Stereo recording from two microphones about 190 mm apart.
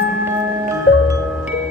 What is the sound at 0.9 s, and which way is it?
Marimba, 60° left (ahead or behind).